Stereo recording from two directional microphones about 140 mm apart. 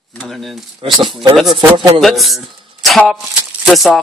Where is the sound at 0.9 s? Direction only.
35° right (ahead or behind).